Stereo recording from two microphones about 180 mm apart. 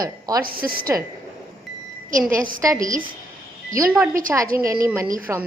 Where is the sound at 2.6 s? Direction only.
20° right (ahead or behind).